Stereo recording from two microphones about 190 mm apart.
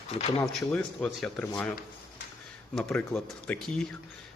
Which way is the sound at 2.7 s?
5° left (ahead or behind).